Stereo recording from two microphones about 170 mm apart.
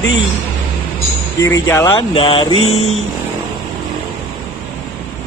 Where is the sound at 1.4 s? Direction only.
15° left (ahead or behind).